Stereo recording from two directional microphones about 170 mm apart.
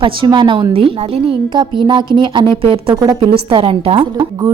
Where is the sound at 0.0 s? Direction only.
25° right (ahead or behind).